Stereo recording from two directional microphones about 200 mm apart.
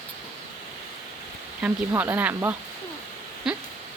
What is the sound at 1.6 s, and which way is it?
Speech, 10° right (ahead or behind).